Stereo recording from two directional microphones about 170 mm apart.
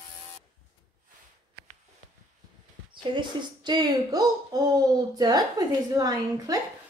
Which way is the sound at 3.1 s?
25° right (ahead or behind).